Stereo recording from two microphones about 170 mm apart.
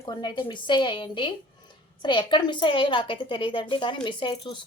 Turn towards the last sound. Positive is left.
turn(degrees=30)  # may be behind; listen again after turning